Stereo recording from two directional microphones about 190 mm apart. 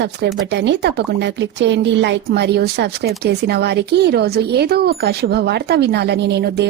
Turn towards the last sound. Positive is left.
turn(degrees=-60)  # may be behind; listen again after turning